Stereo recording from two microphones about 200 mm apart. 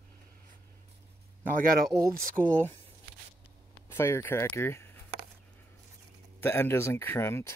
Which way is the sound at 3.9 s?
10° left (ahead or behind).